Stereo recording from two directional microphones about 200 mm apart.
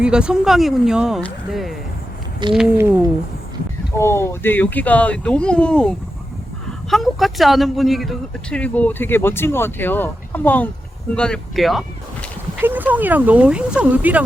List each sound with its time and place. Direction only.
0.0 s speech: 5° right (ahead or behind)
3.9 s speech: 15° left (ahead or behind); by 14.3 s 5° right (ahead or behind)